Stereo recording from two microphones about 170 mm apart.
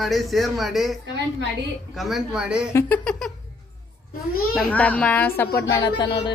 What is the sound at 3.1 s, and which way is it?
Speech, centre (ahead or behind).